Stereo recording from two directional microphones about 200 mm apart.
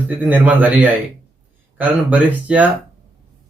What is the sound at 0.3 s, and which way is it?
Speech, 10° right (ahead or behind).